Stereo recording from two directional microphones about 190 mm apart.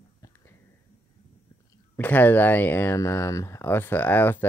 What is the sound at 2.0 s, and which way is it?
Speech, 10° left (ahead or behind).